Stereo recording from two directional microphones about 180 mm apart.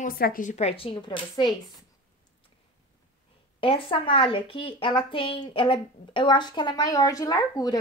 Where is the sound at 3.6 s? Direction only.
30° left (ahead or behind).